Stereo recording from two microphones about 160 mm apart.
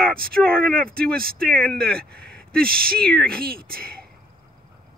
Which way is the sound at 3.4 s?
65° right (ahead or behind).